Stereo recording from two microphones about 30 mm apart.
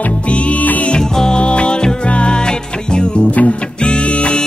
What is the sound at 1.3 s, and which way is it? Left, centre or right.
Music, left.